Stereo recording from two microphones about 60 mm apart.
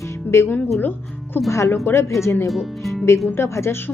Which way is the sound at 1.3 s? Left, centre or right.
Left.